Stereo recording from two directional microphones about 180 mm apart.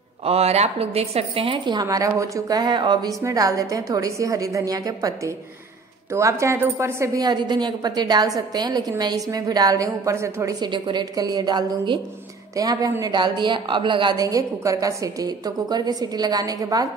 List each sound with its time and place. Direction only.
0.2 s a woman's voice: 35° right (ahead or behind)